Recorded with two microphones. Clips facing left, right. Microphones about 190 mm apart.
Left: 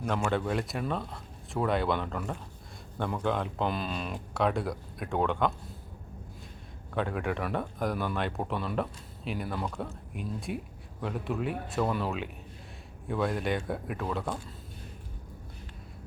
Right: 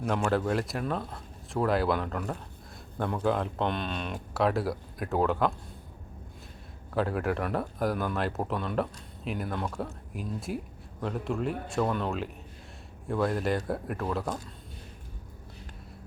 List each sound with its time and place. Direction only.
0.3 s speech: centre (ahead or behind)
6.9 s speech: centre (ahead or behind)